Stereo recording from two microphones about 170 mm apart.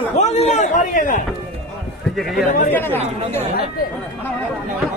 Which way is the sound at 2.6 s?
10° left (ahead or behind).